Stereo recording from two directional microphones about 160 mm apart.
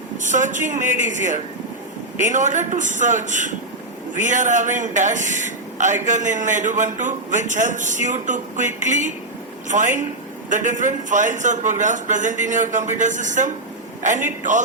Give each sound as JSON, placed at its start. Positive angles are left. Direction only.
{"t": 0.2, "sound": "a man's voice", "side_deg": -50}
{"t": 2.2, "sound": "a man's voice", "side_deg": -50}